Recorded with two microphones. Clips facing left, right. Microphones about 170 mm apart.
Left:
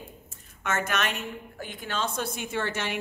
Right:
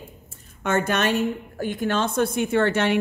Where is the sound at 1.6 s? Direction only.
50° right (ahead or behind).